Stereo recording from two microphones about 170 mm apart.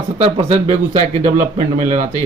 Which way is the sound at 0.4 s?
40° right (ahead or behind).